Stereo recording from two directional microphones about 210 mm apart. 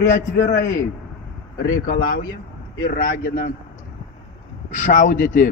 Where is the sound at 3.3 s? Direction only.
40° left (ahead or behind).